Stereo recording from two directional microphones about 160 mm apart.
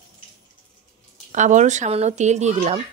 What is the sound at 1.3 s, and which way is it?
Speech, 50° right (ahead or behind).